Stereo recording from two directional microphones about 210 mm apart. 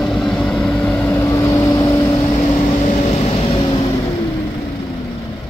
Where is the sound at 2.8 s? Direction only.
30° left (ahead or behind).